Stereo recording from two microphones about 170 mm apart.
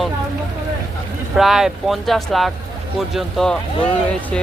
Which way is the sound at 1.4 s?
Centre (ahead or behind).